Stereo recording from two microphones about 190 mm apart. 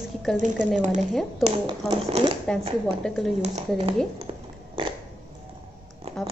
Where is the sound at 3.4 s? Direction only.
35° right (ahead or behind).